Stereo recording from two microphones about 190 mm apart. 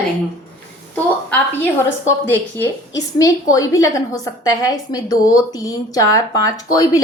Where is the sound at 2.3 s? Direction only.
15° left (ahead or behind).